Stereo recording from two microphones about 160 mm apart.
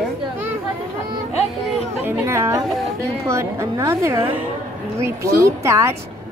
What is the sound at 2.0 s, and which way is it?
A woman's voice, 15° right (ahead or behind).